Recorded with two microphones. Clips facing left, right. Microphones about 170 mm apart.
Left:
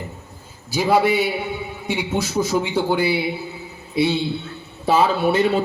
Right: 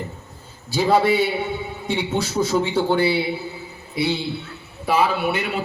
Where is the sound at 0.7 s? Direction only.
10° left (ahead or behind).